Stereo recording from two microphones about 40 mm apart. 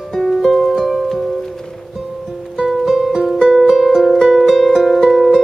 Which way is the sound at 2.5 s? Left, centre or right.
Centre.